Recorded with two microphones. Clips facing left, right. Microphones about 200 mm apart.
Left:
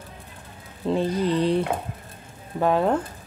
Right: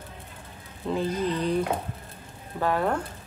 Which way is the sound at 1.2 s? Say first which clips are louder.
Left 5 dB; 30° left (ahead or behind).